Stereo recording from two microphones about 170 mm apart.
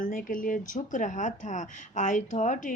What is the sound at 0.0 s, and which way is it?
Speech, 55° left (ahead or behind).